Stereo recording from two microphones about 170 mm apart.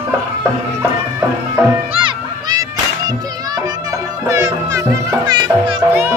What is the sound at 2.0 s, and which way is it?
Music, 25° right (ahead or behind).